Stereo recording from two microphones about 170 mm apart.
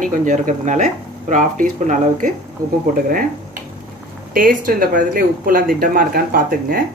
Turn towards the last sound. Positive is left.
turn(degrees=-55)  # may be behind; listen again after turning